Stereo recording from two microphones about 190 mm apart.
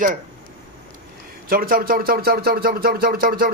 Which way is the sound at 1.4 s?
50° right (ahead or behind).